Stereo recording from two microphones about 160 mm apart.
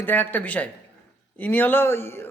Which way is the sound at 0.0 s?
10° left (ahead or behind).